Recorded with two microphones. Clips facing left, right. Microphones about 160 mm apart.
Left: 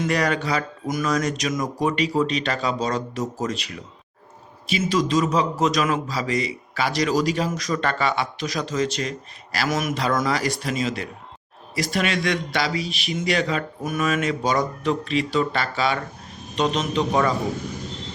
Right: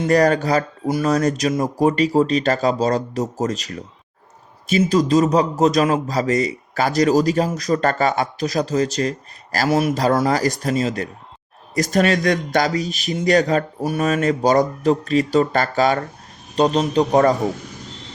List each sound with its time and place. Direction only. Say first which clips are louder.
0.0 s a man's voice: right 7 dB; 40° right (ahead or behind)